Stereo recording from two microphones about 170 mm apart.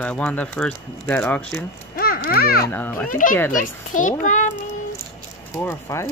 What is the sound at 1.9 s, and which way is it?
Speech, 60° left (ahead or behind).